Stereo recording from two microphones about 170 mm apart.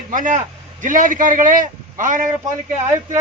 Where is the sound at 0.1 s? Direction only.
50° right (ahead or behind).